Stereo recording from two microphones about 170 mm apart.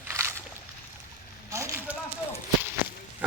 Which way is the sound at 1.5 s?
15° right (ahead or behind).